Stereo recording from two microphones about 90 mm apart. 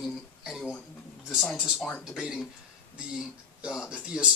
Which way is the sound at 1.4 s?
15° left (ahead or behind).